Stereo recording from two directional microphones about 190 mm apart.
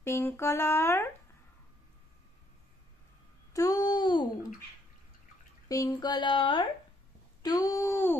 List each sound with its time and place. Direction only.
0.0 s speech: 15° left (ahead or behind)
3.5 s a child's voice: 20° left (ahead or behind)
5.7 s speech: 20° left (ahead or behind)